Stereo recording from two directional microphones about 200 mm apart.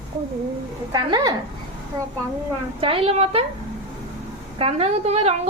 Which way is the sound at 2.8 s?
25° right (ahead or behind).